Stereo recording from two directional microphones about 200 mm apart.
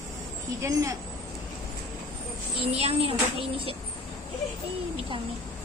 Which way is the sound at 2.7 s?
30° right (ahead or behind).